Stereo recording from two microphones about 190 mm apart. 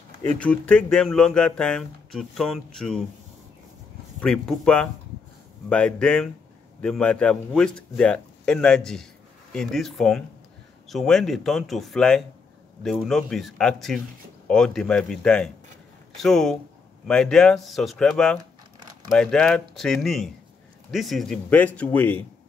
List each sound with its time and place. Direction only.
0.4 s speech: 5° left (ahead or behind)
4.2 s speech: 5° left (ahead or behind)